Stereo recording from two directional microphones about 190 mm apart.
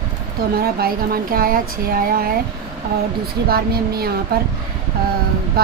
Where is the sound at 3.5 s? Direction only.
55° right (ahead or behind).